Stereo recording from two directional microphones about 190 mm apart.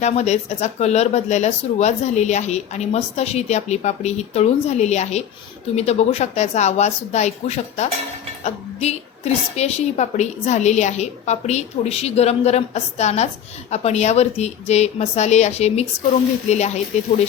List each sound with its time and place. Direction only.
0.0 s speech: 35° left (ahead or behind)